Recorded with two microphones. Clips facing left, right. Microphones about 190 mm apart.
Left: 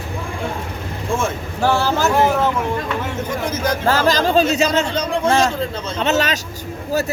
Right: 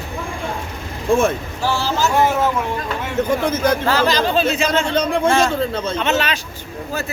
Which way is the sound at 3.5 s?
55° right (ahead or behind).